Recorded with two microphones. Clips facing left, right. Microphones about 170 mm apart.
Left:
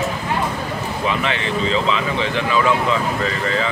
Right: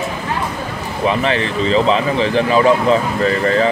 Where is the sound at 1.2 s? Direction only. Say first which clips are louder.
Right 4 dB; 35° right (ahead or behind).